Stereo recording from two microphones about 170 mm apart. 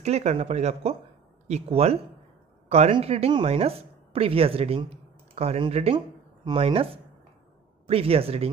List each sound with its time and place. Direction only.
0.0 s speech: 40° right (ahead or behind)